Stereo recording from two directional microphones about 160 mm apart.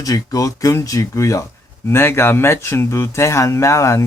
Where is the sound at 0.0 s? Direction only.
20° left (ahead or behind).